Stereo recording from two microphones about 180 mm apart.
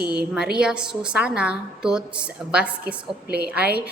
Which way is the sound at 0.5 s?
5° right (ahead or behind).